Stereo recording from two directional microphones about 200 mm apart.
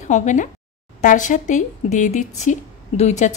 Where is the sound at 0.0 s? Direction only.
35° left (ahead or behind).